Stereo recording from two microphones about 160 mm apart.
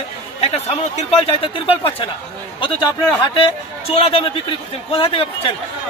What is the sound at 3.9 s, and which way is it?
A man's voice, 40° left (ahead or behind).